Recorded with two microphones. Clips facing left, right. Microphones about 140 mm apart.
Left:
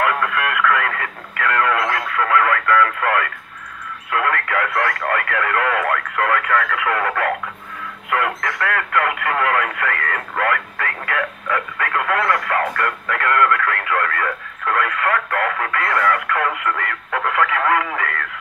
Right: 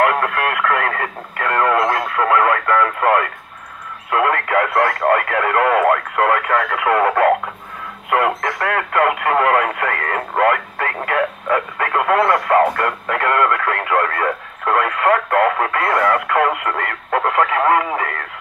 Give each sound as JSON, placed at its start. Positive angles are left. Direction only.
{"t": 0.0, "sound": "radio", "side_deg": -45}
{"t": 4.7, "sound": "speech", "side_deg": -35}